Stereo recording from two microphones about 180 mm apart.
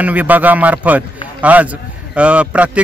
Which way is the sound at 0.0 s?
10° right (ahead or behind).